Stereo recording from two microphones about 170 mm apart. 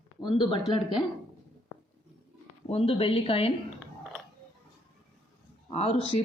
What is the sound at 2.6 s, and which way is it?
Speech, 35° left (ahead or behind).